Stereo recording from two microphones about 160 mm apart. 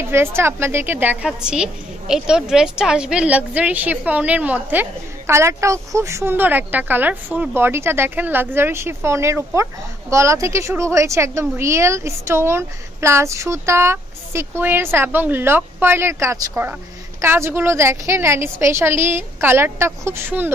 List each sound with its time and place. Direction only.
0.0 s a woman's voice: 15° right (ahead or behind)